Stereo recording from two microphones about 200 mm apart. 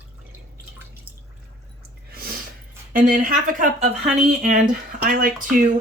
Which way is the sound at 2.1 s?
50° right (ahead or behind).